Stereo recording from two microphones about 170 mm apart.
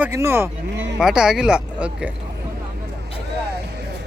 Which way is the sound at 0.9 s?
5° right (ahead or behind).